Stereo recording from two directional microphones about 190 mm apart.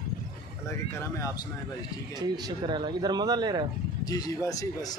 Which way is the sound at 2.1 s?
20° right (ahead or behind).